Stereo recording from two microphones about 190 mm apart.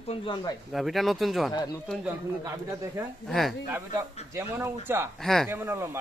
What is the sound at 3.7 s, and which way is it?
Speech, 15° right (ahead or behind).